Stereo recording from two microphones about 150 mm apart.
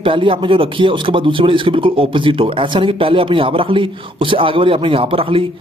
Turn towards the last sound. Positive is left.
turn(degrees=-35)  # may be behind; listen again after turning